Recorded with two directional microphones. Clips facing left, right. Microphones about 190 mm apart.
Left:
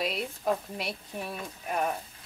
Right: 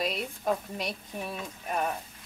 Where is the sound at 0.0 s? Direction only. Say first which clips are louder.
Even; centre (ahead or behind).